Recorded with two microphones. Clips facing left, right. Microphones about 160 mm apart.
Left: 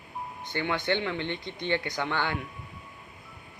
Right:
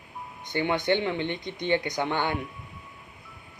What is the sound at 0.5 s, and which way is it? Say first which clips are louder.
Speech: right 4 dB; 20° right (ahead or behind).